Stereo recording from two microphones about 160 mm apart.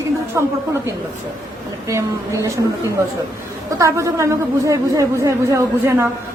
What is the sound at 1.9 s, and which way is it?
Speech, 20° right (ahead or behind).